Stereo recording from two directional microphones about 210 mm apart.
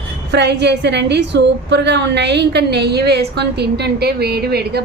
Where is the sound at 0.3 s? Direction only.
55° right (ahead or behind).